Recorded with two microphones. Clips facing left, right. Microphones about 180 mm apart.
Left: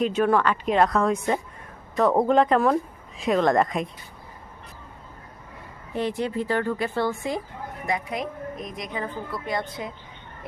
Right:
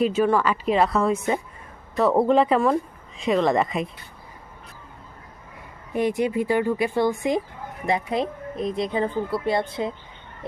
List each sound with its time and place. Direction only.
0.0 s a woman's voice: 5° right (ahead or behind)
5.9 s speech: 15° right (ahead or behind)
7.9 s a woman's voice: 30° right (ahead or behind)